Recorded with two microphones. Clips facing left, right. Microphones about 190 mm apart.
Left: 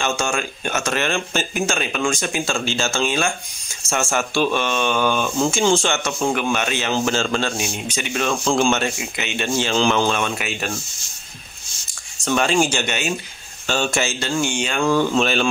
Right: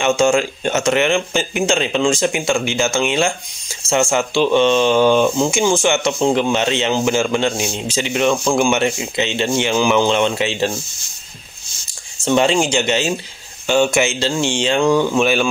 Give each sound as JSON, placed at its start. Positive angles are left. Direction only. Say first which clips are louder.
{"t": 0.2, "sound": "speech", "louder": "right 9 dB", "side_deg": -20}
{"t": 12.3, "sound": "speech", "louder": "right 3 dB", "side_deg": -25}
{"t": 13.7, "sound": "speech", "louder": "right 7 dB", "side_deg": -15}
{"t": 14.2, "sound": "speech", "louder": "right 4 dB", "side_deg": -25}